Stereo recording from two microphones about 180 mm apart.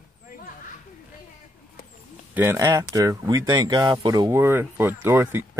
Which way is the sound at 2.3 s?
15° right (ahead or behind).